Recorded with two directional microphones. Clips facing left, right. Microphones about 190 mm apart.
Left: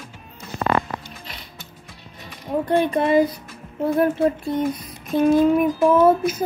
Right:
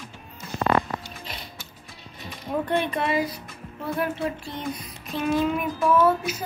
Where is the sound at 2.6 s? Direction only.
40° left (ahead or behind).